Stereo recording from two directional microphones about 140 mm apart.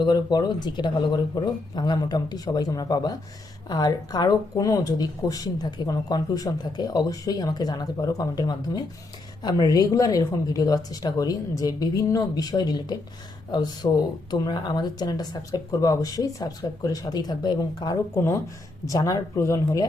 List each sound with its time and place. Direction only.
0.0 s speech: 30° left (ahead or behind)
18.2 s speech: 15° left (ahead or behind)